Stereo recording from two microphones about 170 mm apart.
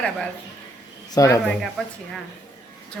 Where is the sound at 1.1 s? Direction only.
20° left (ahead or behind).